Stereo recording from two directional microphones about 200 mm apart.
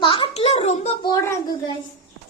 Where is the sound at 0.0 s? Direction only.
25° left (ahead or behind).